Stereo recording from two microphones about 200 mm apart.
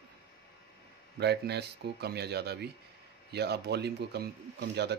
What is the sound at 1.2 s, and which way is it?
Speech, 55° right (ahead or behind).